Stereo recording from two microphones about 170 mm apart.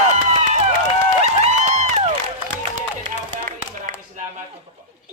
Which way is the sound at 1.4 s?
45° right (ahead or behind).